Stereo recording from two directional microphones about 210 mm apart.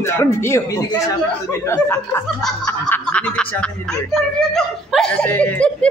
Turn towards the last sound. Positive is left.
turn(degrees=5)  # may be behind; listen again after turning